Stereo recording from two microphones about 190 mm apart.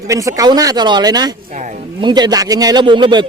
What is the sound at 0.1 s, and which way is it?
A man's voice, 15° right (ahead or behind).